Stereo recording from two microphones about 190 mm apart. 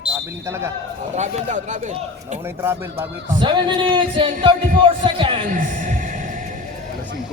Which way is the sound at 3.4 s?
25° right (ahead or behind).